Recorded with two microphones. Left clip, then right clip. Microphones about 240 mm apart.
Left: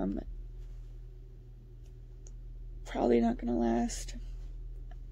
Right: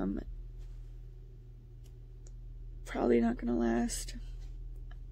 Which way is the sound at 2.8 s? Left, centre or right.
Centre.